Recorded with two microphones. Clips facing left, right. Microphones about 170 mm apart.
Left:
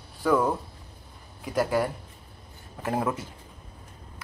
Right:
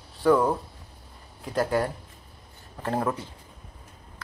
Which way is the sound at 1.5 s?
10° left (ahead or behind).